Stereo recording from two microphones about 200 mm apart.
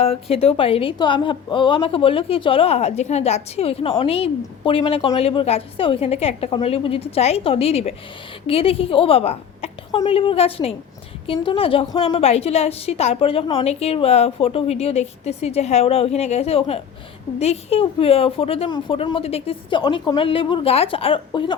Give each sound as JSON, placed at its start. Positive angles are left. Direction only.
{"t": 0.0, "sound": "a woman's voice", "side_deg": 30}